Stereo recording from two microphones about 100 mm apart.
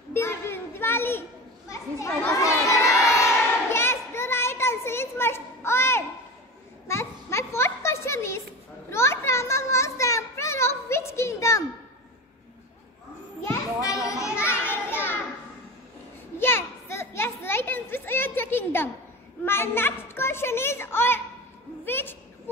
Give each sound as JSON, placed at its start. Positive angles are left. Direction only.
{"t": 0.1, "sound": "a sound", "side_deg": 25}
{"t": 1.7, "sound": "crowd", "side_deg": 30}
{"t": 6.9, "sound": "children playing", "side_deg": 25}
{"t": 13.4, "sound": "children playing", "side_deg": 30}
{"t": 16.3, "sound": "children playing", "side_deg": 25}
{"t": 19.4, "sound": "a sound", "side_deg": 25}